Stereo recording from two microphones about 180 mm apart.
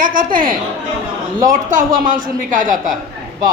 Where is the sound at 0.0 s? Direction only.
50° right (ahead or behind).